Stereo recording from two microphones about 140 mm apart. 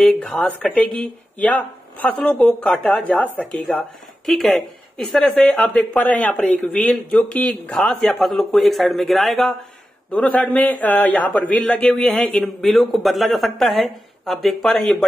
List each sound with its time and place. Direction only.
0.0 s speech: 5° left (ahead or behind)